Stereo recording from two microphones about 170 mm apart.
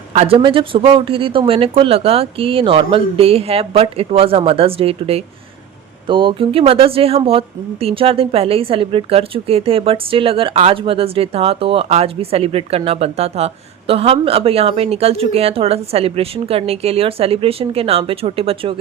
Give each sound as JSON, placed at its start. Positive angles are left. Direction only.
{"t": 0.1, "sound": "speech", "side_deg": -35}